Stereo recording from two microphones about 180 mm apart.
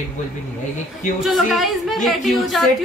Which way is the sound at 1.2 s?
Centre (ahead or behind).